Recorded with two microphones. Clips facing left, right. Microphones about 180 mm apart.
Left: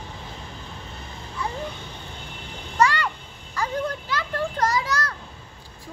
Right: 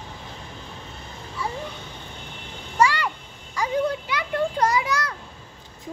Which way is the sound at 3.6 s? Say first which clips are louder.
Right 3 dB; 15° right (ahead or behind).